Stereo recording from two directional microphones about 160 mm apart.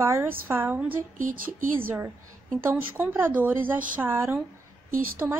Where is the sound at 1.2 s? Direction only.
60° right (ahead or behind).